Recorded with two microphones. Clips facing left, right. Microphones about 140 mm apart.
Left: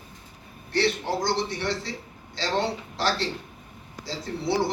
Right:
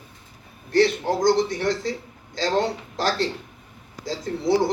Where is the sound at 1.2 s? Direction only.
45° right (ahead or behind).